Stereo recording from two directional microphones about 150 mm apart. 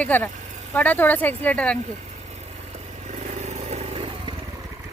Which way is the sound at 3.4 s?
45° right (ahead or behind).